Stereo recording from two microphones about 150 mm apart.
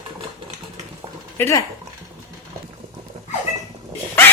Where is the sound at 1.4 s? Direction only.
15° left (ahead or behind).